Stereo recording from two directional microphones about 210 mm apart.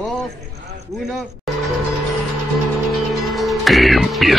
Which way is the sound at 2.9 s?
Centre (ahead or behind).